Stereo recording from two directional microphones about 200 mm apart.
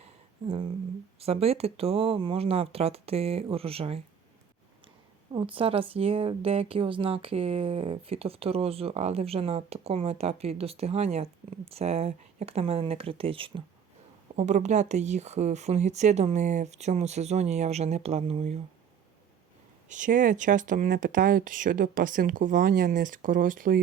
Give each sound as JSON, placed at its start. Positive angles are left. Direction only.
{"t": 0.0, "sound": "a sound", "side_deg": -30}
{"t": 1.2, "sound": "a woman's voice", "side_deg": -30}
{"t": 5.3, "sound": "a woman's voice", "side_deg": -25}
{"t": 19.9, "sound": "speech", "side_deg": -40}